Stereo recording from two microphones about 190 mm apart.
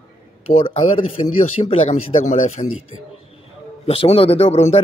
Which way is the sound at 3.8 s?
30° left (ahead or behind).